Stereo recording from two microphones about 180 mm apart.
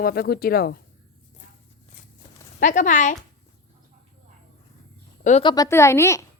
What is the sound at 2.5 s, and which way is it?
Speech, 45° left (ahead or behind).